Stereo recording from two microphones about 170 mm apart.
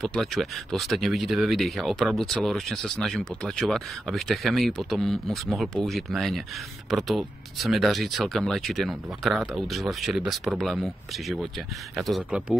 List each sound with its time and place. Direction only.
0.0 s speech: centre (ahead or behind)